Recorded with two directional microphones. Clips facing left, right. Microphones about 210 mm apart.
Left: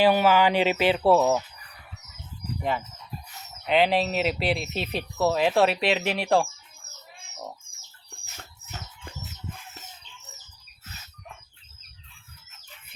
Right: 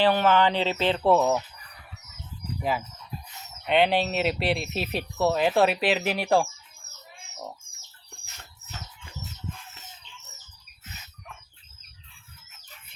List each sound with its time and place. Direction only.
0.0 s speech: 10° left (ahead or behind)
2.6 s speech: 5° right (ahead or behind)